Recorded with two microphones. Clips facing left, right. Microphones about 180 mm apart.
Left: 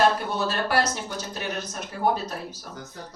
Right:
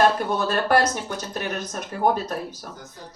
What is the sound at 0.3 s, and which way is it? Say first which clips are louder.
A man's voice: right 4 dB; 55° right (ahead or behind).